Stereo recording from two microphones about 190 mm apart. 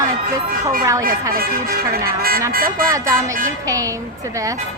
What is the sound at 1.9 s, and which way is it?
Speech, 50° right (ahead or behind).